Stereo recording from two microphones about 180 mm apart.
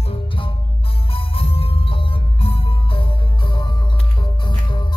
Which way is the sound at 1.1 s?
30° left (ahead or behind).